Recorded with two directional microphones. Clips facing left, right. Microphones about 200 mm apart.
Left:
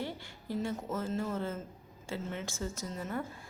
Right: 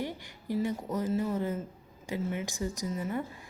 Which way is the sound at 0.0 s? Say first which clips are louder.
Right 3 dB; 15° right (ahead or behind).